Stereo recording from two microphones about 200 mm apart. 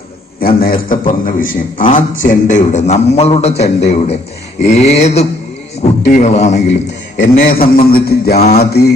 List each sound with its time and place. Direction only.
0.3 s a man's voice: 45° left (ahead or behind)
7.2 s a man's voice: 45° left (ahead or behind)